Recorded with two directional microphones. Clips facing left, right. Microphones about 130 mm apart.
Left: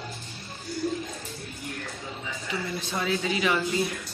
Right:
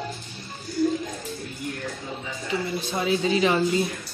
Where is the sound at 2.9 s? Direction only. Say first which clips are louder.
Right 5 dB; 20° right (ahead or behind).